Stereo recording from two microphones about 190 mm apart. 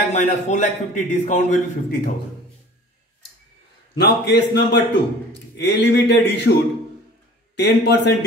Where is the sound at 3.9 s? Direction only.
65° left (ahead or behind).